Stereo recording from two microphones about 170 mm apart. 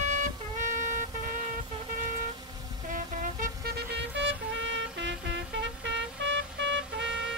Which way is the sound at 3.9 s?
90° right.